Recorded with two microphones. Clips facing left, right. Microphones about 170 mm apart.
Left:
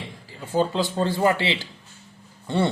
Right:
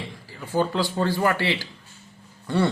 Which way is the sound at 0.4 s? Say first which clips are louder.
Left 1 dB; 20° left (ahead or behind).